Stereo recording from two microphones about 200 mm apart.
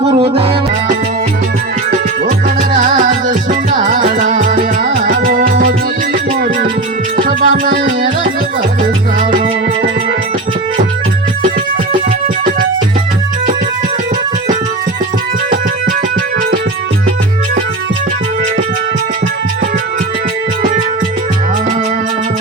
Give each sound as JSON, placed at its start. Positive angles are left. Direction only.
{"t": 0.0, "sound": "music", "side_deg": -30}
{"t": 2.2, "sound": "music", "side_deg": -40}
{"t": 7.2, "sound": "music", "side_deg": -45}